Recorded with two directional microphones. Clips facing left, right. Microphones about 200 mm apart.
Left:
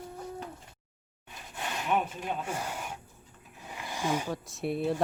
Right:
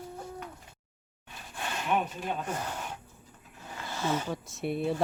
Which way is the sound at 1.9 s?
5° left (ahead or behind).